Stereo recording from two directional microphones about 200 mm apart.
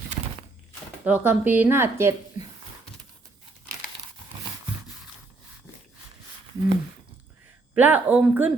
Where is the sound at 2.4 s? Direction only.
40° left (ahead or behind).